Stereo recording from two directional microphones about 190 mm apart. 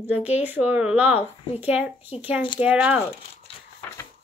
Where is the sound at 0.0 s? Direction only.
10° right (ahead or behind).